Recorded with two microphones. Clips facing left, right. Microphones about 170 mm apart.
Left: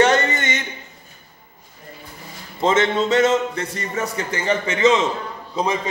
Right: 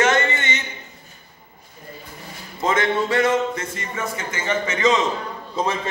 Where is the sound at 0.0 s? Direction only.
40° left (ahead or behind).